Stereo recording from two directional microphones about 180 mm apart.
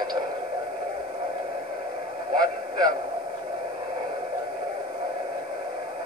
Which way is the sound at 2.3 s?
20° right (ahead or behind).